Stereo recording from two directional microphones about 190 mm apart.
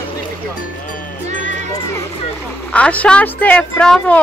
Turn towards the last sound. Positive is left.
turn(degrees=5)  # may be behind; listen again after turning